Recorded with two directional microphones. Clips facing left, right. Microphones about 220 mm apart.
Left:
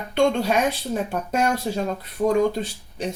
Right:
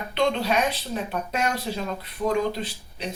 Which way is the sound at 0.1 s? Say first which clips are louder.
Left 4 dB; 45° left (ahead or behind).